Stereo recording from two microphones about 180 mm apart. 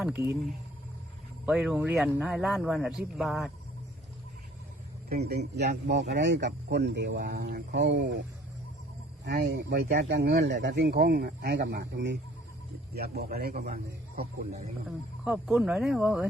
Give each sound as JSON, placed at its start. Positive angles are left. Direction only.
{"t": 0.0, "sound": "speech", "side_deg": -10}
{"t": 1.5, "sound": "speech", "side_deg": -5}
{"t": 5.2, "sound": "speech", "side_deg": -65}
{"t": 9.2, "sound": "speech", "side_deg": -65}
{"t": 13.7, "sound": "speech", "side_deg": -40}
{"t": 14.8, "sound": "speech", "side_deg": -5}